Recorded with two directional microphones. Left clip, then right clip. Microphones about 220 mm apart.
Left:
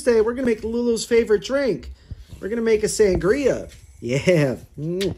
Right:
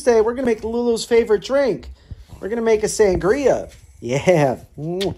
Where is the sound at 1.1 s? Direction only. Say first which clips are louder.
Right 2 dB; 15° left (ahead or behind).